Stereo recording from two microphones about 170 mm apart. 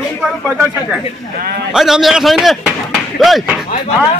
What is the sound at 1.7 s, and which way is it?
A man's voice, centre (ahead or behind).